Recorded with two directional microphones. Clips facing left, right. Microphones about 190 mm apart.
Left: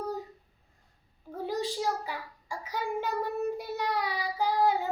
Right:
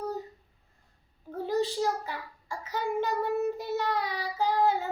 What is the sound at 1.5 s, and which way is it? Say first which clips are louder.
Child singing: right 3 dB; 10° left (ahead or behind).